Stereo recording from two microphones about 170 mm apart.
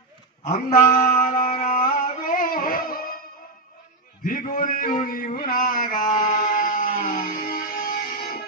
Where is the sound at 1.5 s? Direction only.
45° left (ahead or behind).